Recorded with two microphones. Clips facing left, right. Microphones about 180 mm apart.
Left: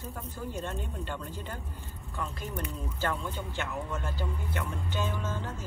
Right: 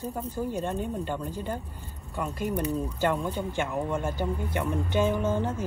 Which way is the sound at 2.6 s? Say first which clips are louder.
Right 9 dB; 35° right (ahead or behind).